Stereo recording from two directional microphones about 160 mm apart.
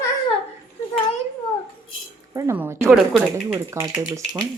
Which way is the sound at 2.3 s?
15° right (ahead or behind).